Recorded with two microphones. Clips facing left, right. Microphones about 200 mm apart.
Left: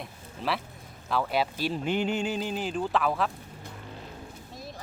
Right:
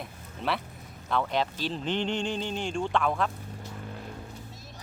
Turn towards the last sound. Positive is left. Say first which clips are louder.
# even
turn(degrees=5)  # may be behind; listen again after turning